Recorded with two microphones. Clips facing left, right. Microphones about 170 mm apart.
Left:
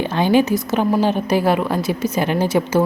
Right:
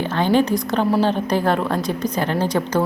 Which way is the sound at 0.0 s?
10° left (ahead or behind).